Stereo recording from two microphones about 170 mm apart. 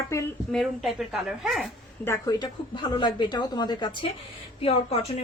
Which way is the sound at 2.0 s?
25° left (ahead or behind).